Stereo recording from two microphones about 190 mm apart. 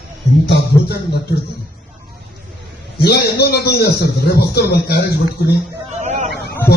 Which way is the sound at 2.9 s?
55° left (ahead or behind).